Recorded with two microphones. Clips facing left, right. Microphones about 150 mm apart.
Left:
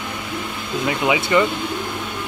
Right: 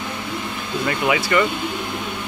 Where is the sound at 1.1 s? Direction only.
20° left (ahead or behind).